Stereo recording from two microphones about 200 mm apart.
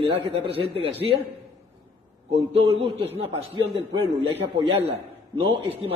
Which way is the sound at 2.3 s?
30° right (ahead or behind).